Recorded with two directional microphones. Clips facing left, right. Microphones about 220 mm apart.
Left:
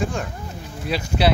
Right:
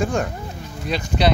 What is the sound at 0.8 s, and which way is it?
Speech, 5° left (ahead or behind).